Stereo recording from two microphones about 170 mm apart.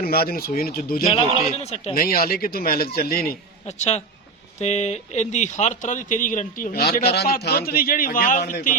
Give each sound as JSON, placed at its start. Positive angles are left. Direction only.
{"t": 0.0, "sound": "speech", "side_deg": 60}
{"t": 1.5, "sound": "a man's voice", "side_deg": 40}
{"t": 2.0, "sound": "speech", "side_deg": 60}
{"t": 3.7, "sound": "a man's voice", "side_deg": 40}